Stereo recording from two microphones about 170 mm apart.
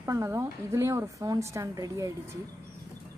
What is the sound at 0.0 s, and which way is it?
A woman's voice, 20° right (ahead or behind).